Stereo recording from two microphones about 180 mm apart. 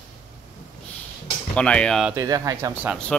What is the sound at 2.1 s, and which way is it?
Speech, 20° right (ahead or behind).